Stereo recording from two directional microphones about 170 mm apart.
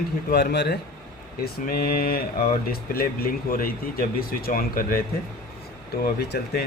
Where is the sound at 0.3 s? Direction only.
75° left (ahead or behind).